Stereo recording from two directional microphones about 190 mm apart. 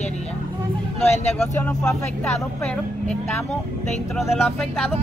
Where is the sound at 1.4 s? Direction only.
5° left (ahead or behind).